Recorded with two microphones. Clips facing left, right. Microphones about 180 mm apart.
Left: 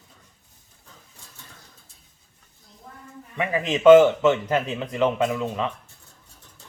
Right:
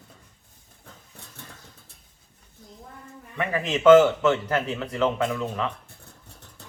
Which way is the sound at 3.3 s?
15° left (ahead or behind).